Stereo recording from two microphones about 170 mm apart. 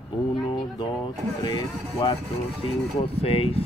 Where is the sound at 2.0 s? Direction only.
25° left (ahead or behind).